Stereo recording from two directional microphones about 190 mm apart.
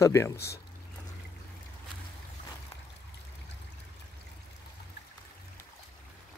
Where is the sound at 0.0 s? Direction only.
15° left (ahead or behind).